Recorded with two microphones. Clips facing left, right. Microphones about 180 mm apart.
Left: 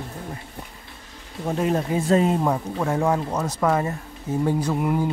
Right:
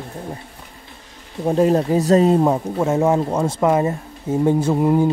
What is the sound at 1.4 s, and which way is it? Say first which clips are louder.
Speech: right 7 dB; 35° right (ahead or behind).